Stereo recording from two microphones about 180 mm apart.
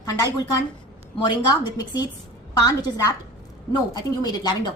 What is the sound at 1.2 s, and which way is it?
A woman's voice, 25° left (ahead or behind).